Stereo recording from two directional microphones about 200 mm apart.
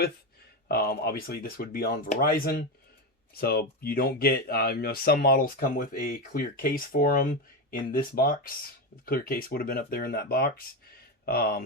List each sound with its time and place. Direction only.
0.7 s speech: 50° left (ahead or behind)